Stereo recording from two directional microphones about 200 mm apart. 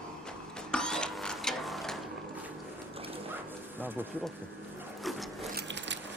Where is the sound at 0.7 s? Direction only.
5° left (ahead or behind).